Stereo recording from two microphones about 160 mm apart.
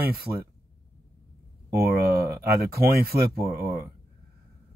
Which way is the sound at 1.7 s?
70° right (ahead or behind).